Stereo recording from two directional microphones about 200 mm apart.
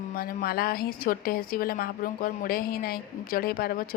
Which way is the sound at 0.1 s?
50° left (ahead or behind).